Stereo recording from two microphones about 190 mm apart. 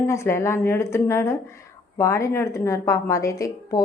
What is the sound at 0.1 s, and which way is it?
A woman's voice, 15° left (ahead or behind).